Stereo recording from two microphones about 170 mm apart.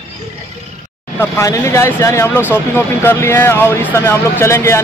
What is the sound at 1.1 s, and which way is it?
Speech, 15° left (ahead or behind).